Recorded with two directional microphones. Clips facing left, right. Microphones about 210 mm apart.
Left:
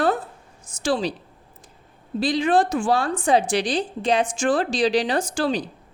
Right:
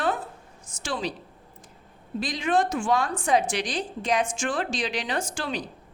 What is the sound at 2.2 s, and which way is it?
A woman's voice, 30° left (ahead or behind).